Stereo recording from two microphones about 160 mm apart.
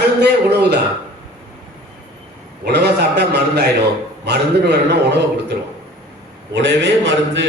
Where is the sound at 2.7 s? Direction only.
90° right.